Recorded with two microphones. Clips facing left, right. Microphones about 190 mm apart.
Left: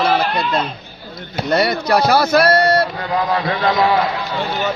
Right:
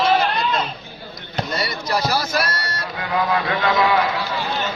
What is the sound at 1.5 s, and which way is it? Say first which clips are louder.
Speech: left 11 dB; 60° left (ahead or behind).